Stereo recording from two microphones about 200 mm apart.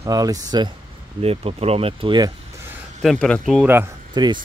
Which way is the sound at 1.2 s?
30° right (ahead or behind).